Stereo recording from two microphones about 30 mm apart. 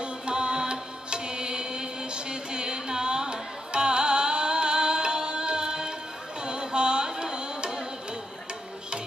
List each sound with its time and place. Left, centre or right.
0.0 s music: right